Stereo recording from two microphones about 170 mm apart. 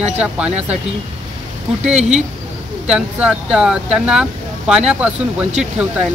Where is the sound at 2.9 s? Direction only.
5° right (ahead or behind).